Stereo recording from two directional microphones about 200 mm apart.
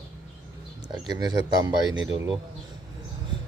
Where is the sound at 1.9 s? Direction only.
65° right (ahead or behind).